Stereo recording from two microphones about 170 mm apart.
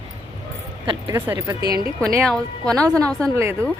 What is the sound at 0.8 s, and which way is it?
A woman's voice, 30° right (ahead or behind).